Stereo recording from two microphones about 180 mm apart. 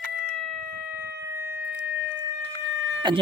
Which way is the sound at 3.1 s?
25° right (ahead or behind).